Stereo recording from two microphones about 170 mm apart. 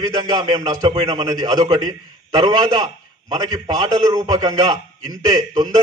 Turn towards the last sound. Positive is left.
turn(degrees=-25)  # may be behind; listen again after turning